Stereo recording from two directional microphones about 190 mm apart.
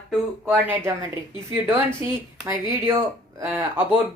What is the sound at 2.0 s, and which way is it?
Speech, 15° right (ahead or behind).